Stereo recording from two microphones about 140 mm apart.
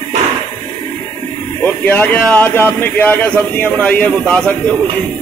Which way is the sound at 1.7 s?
10° left (ahead or behind).